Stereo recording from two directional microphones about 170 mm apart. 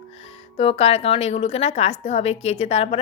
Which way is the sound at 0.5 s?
35° left (ahead or behind).